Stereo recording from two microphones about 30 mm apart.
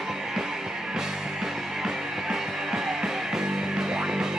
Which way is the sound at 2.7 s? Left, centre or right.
Centre.